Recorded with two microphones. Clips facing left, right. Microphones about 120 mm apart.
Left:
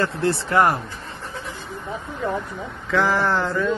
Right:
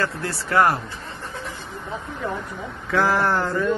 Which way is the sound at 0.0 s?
25° left (ahead or behind).